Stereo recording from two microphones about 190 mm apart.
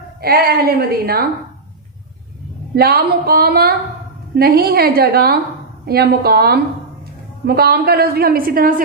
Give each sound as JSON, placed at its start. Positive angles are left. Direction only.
{"t": 0.2, "sound": "a woman's voice", "side_deg": -55}
{"t": 2.7, "sound": "a woman's voice", "side_deg": -55}